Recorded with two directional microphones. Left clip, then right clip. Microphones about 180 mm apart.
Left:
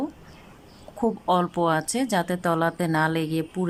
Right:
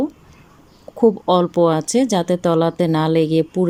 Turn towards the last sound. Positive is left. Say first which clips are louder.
# right 11 dB
turn(degrees=-15)  # may be behind; listen again after turning